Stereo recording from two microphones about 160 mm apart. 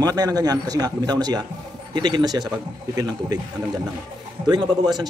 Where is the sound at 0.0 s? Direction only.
25° right (ahead or behind).